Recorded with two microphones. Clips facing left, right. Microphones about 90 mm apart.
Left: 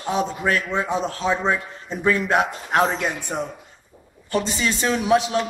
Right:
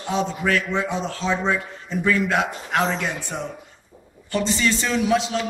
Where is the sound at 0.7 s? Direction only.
15° left (ahead or behind).